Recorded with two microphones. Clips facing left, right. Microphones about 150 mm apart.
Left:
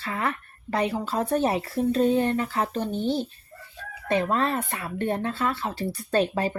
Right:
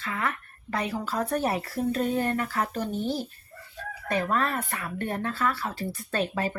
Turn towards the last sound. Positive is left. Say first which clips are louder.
# left 5 dB
turn(degrees=30)  # may be behind; listen again after turning